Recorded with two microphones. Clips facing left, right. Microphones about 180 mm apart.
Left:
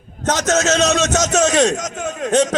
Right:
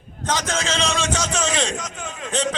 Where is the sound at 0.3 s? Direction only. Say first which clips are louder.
Left 7 dB; 45° left (ahead or behind).